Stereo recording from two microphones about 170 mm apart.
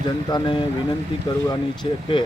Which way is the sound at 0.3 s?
25° left (ahead or behind).